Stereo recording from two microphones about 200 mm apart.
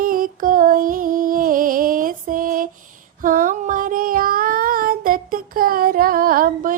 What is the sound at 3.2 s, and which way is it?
Child singing, 45° right (ahead or behind).